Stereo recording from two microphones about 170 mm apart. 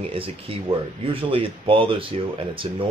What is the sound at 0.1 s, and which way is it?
Speech, 35° right (ahead or behind).